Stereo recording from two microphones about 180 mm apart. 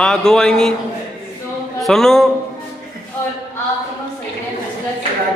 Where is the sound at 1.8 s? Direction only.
Centre (ahead or behind).